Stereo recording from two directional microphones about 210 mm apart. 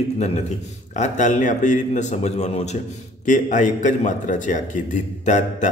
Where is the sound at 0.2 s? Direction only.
30° left (ahead or behind).